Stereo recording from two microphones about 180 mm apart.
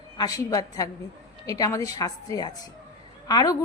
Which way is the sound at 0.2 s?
20° left (ahead or behind).